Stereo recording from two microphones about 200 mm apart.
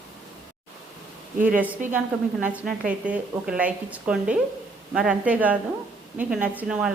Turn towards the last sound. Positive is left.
turn(degrees=-5)  # may be behind; listen again after turning